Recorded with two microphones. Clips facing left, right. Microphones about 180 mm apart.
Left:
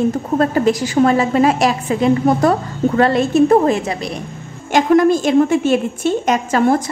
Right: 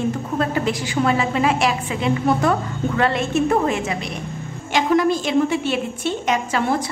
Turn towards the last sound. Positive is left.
turn(degrees=45)  # may be behind; listen again after turning